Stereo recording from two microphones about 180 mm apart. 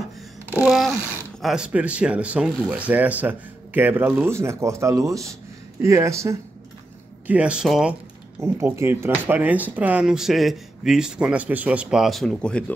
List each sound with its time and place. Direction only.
0.5 s speech: 5° right (ahead or behind)
8.4 s speech: 15° right (ahead or behind); by 12.7 s 5° left (ahead or behind)